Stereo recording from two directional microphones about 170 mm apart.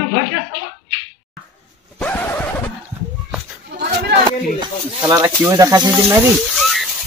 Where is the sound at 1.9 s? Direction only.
10° left (ahead or behind).